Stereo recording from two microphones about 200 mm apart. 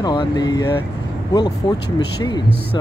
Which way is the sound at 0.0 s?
20° left (ahead or behind).